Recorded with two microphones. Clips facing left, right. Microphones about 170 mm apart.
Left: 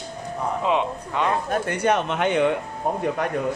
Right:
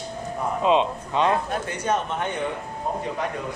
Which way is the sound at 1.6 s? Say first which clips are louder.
Left 4 dB; 65° left (ahead or behind).